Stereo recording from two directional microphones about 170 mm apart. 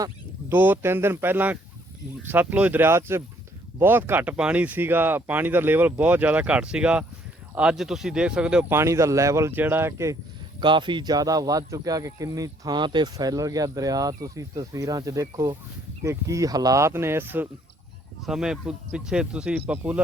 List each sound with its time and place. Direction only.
0.0 s speech: 15° right (ahead or behind)
8.8 s speech: 15° right (ahead or behind)
10.6 s speech: 30° right (ahead or behind); by 20.0 s 10° right (ahead or behind)